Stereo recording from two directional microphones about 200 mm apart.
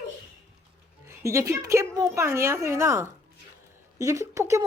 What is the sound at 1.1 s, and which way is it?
A woman's voice, 15° right (ahead or behind).